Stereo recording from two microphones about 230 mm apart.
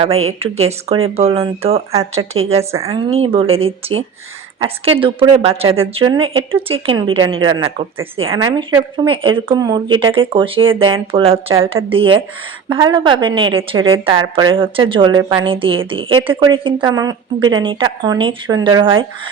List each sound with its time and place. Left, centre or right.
0.3 s speech: right